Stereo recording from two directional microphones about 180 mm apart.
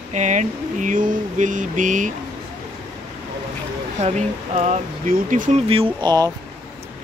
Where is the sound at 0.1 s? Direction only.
40° right (ahead or behind).